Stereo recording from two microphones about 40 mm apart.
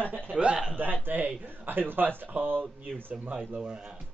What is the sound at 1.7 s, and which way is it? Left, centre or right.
Speech, right.